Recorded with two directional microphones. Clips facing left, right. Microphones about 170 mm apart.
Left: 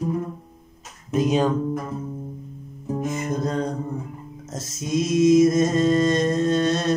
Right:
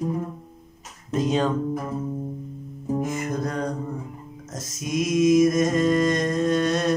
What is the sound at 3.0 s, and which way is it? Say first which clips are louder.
Music: left 1 dB; 20° left (ahead or behind).